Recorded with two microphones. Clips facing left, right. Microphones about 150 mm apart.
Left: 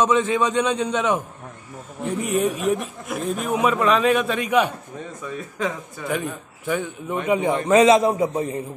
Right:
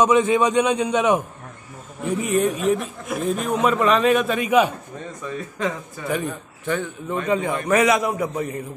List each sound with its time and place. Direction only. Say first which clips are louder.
0.0 s a man's voice: right 3 dB; 15° right (ahead or behind)
2.1 s a man's voice: right 1 dB; centre (ahead or behind); by 8.6 s 25° left (ahead or behind)